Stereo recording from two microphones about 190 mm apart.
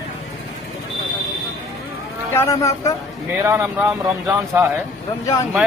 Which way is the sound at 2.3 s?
15° left (ahead or behind).